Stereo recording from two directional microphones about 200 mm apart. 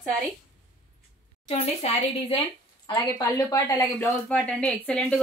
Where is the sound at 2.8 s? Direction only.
20° left (ahead or behind).